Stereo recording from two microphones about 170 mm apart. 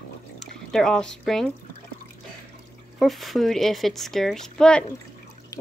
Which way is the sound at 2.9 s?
Centre (ahead or behind).